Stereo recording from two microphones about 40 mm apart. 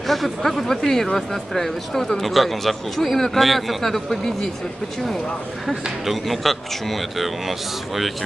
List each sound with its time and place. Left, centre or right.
0.0 s speech: centre
5.7 s speech: centre